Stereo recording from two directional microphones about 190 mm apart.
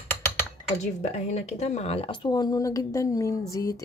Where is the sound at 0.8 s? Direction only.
35° left (ahead or behind).